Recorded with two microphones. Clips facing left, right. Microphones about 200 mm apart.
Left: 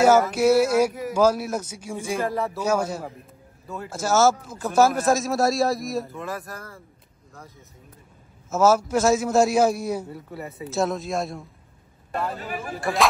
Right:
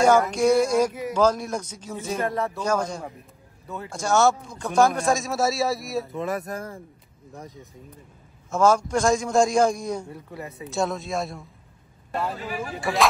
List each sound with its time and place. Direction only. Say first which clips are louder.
0.0 s speech: left 1 dB; 5° left (ahead or behind)
6.1 s speech: right 5 dB; 20° right (ahead or behind)
8.5 s a man's voice: left 1 dB; 5° left (ahead or behind)